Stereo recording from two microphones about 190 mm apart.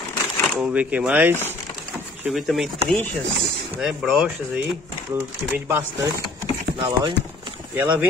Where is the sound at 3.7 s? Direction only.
5° right (ahead or behind).